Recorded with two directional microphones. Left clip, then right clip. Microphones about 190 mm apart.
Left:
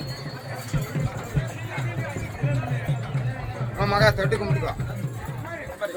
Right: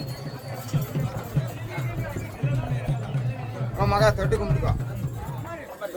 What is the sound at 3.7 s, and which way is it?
Speech, 15° right (ahead or behind).